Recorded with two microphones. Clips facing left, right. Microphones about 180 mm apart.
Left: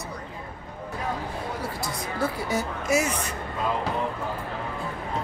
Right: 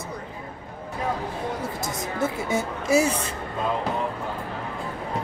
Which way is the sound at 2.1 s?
25° right (ahead or behind).